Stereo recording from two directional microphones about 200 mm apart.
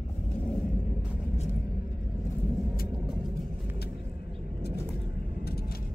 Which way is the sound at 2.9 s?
5° right (ahead or behind).